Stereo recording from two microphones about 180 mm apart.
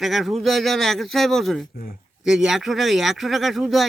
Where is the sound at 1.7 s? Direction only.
50° left (ahead or behind).